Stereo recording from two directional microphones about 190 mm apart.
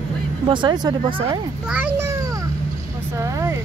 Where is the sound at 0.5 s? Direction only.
25° right (ahead or behind).